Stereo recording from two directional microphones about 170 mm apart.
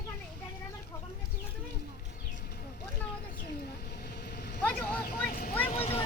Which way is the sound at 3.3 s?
70° left (ahead or behind).